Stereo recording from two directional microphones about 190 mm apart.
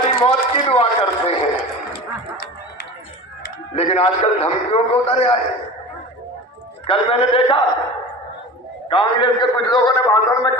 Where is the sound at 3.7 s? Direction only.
30° left (ahead or behind).